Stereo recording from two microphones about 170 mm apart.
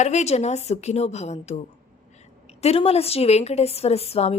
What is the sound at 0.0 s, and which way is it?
A woman's voice, 40° left (ahead or behind).